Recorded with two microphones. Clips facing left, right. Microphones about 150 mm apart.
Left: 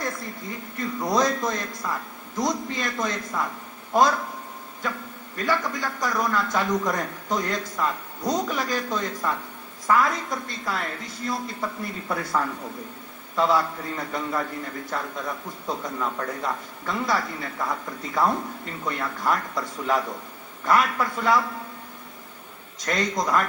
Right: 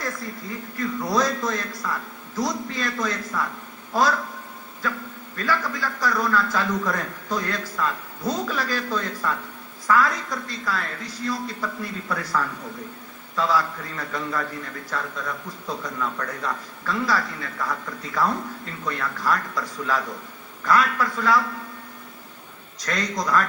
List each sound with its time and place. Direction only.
0.0 s a man's voice: 20° left (ahead or behind)
5.5 s a man's voice: 20° left (ahead or behind)
22.9 s a man's voice: 25° left (ahead or behind)